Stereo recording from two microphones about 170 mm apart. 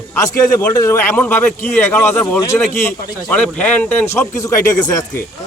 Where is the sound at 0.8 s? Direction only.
15° left (ahead or behind).